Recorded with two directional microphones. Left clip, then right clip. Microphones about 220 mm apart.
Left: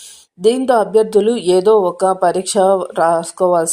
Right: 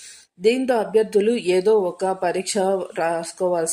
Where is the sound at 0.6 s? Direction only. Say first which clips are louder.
Left 7 dB; 20° left (ahead or behind).